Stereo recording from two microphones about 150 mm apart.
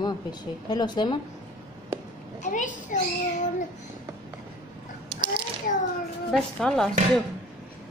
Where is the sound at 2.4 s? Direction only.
55° left (ahead or behind).